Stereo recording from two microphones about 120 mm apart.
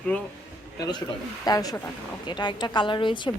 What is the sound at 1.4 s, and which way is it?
A woman's voice, 30° left (ahead or behind).